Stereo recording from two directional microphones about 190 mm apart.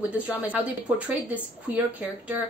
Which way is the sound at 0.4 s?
5° right (ahead or behind).